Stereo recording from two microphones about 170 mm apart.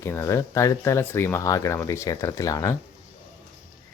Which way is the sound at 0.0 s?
15° left (ahead or behind).